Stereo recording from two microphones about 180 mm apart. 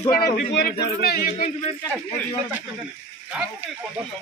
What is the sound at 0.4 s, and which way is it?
A man's voice, 65° left (ahead or behind).